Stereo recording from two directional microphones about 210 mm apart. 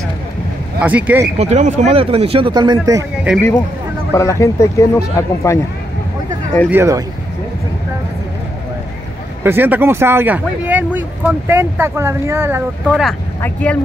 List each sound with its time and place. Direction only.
0.7 s speech: 5° right (ahead or behind)
1.4 s speech: 35° right (ahead or behind); by 3.1 s 15° right (ahead or behind)
3.3 s speech: 5° right (ahead or behind)
4.1 s speech: 15° left (ahead or behind)
6.7 s speech: 15° right (ahead or behind)
9.4 s speech: 10° right (ahead or behind)
13.4 s speech: 5° left (ahead or behind)